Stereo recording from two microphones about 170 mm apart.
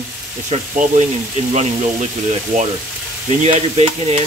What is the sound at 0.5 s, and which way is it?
Sizzle, 40° right (ahead or behind).